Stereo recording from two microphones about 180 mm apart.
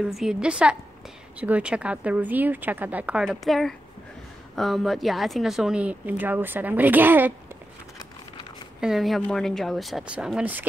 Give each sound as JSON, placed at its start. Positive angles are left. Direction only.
{"t": 0.0, "sound": "a woman's voice", "side_deg": 0}
{"t": 8.8, "sound": "speech", "side_deg": 0}